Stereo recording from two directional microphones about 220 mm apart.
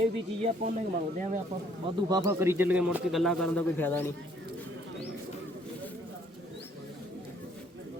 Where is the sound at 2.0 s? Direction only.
15° right (ahead or behind); by 4.1 s 10° left (ahead or behind).